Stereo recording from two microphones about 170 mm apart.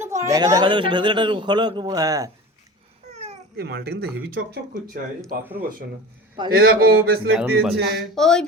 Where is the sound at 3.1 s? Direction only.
40° right (ahead or behind).